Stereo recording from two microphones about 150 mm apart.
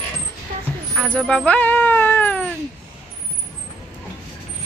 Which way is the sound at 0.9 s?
10° left (ahead or behind).